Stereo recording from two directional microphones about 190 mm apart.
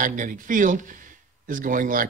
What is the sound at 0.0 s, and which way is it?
Speech, 45° right (ahead or behind).